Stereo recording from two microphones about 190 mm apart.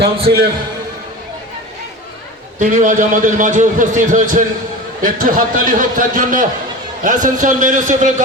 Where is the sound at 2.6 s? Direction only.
40° right (ahead or behind).